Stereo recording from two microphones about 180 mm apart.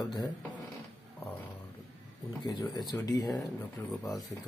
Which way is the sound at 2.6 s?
20° left (ahead or behind).